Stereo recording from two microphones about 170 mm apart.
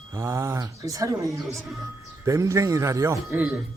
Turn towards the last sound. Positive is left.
turn(degrees=-10)  # may be behind; listen again after turning